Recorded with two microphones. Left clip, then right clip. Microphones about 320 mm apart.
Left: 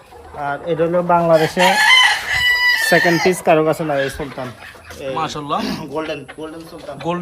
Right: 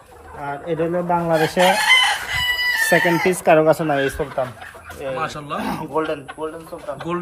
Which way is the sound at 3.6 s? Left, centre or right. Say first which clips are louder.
Right 1 dB; centre.